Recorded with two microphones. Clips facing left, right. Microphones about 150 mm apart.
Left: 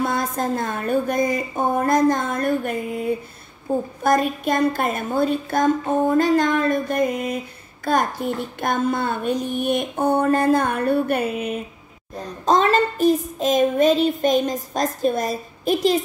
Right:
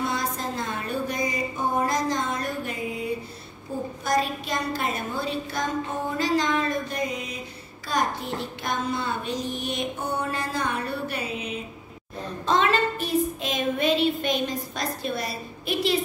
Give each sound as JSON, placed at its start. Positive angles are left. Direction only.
{"t": 0.0, "sound": "a sound", "side_deg": 50}
{"t": 3.7, "sound": "child singing", "side_deg": 50}
{"t": 12.4, "sound": "child singing", "side_deg": 40}